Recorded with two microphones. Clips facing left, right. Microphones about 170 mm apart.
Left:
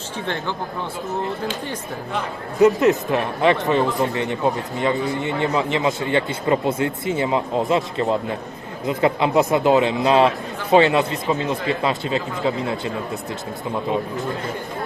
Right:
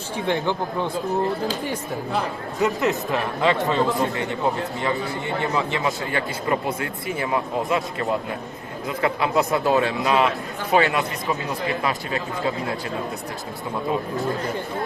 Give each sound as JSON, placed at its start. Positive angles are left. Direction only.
{"t": 0.3, "sound": "speech", "side_deg": -15}
{"t": 2.6, "sound": "speech", "side_deg": 20}